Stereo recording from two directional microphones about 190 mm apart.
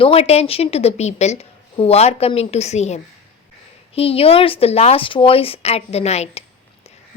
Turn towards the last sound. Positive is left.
turn(degrees=35)  # may be behind; listen again after turning